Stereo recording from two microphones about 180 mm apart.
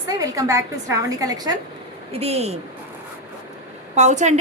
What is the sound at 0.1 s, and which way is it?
A woman's voice, 20° right (ahead or behind).